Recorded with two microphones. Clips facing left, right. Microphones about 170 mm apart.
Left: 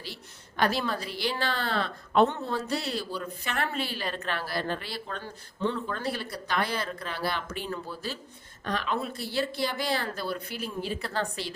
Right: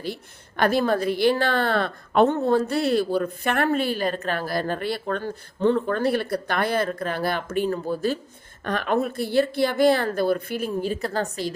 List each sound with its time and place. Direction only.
0.0 s a woman's voice: 55° right (ahead or behind)